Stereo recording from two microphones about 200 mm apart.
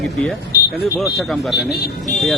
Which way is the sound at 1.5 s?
55° left (ahead or behind).